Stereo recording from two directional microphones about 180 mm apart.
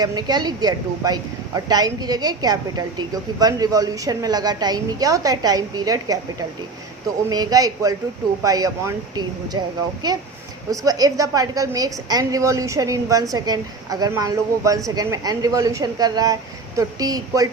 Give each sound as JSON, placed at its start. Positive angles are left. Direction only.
{"t": 0.0, "sound": "a woman's voice", "side_deg": -20}
{"t": 7.3, "sound": "a woman's voice", "side_deg": -20}
{"t": 10.7, "sound": "a woman's voice", "side_deg": -20}